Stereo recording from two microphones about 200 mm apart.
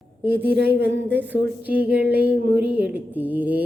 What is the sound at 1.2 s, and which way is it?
Speech, 10° right (ahead or behind).